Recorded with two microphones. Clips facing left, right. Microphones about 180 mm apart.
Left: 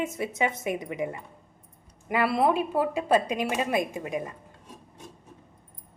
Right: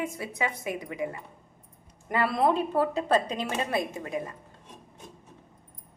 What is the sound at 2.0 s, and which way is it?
Speech, 10° left (ahead or behind).